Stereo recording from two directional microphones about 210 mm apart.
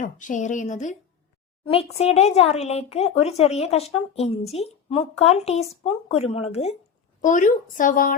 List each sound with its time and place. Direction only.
0.0 s speech: 35° left (ahead or behind)